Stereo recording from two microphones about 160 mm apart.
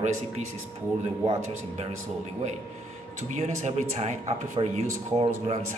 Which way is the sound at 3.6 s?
45° right (ahead or behind).